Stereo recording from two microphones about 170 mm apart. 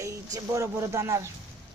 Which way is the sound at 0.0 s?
20° right (ahead or behind).